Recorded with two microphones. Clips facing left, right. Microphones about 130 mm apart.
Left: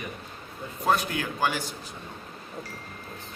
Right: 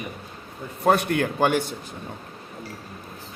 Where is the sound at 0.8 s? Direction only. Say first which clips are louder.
Right 6 dB; 55° right (ahead or behind).